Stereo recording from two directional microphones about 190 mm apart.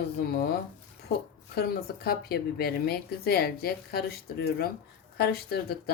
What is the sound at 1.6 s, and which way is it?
A woman's voice, 55° left (ahead or behind).